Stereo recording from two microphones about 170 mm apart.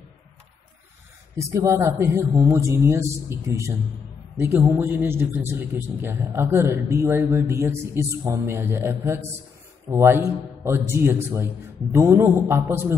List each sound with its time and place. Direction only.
1.3 s a man's voice: 15° right (ahead or behind)